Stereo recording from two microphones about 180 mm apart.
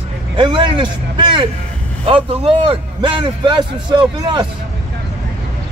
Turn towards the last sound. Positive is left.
turn(degrees=-25)  # may be behind; listen again after turning